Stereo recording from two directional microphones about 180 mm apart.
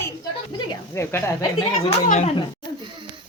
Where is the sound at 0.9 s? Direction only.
15° left (ahead or behind).